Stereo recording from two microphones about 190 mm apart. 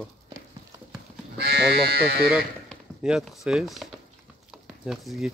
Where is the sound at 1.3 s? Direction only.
55° right (ahead or behind).